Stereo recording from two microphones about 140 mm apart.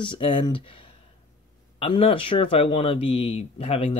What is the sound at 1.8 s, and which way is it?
Speech, 40° left (ahead or behind).